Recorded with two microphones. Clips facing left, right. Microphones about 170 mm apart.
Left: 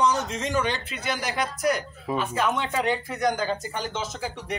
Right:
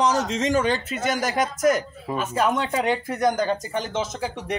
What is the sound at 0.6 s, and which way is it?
Speech, 45° right (ahead or behind).